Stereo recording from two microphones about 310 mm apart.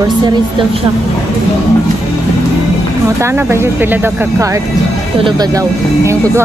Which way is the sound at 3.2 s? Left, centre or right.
Centre.